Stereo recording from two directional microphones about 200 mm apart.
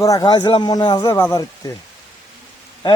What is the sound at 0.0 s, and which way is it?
Speech, 20° left (ahead or behind).